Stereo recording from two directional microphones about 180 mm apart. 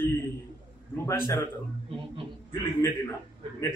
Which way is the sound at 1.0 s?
15° left (ahead or behind).